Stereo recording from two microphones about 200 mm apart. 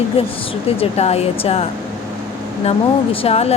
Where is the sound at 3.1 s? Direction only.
30° left (ahead or behind).